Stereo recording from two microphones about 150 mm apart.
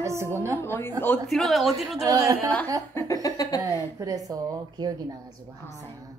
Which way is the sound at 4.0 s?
25° right (ahead or behind).